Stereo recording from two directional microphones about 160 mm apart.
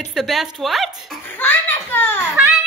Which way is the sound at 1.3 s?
10° left (ahead or behind).